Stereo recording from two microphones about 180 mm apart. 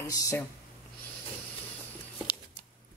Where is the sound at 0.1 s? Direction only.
20° left (ahead or behind).